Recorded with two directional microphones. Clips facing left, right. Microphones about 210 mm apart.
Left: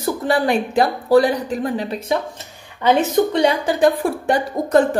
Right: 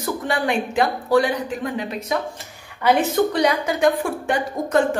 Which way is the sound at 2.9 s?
20° left (ahead or behind).